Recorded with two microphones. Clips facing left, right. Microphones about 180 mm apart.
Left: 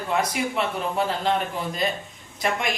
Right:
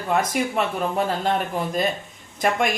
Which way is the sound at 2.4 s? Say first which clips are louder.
Right 4 dB; 50° right (ahead or behind).